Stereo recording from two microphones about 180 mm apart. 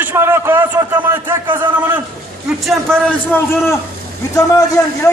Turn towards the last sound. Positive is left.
turn(degrees=20)  # may be behind; listen again after turning